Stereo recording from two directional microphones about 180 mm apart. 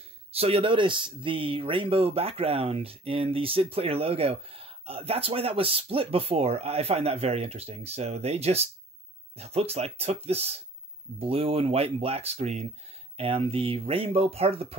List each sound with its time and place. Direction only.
0.3 s speech: 35° right (ahead or behind)